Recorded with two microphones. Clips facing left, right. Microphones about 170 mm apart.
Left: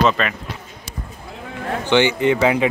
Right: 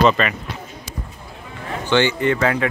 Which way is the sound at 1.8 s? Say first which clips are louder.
Left 1 dB; 15° left (ahead or behind).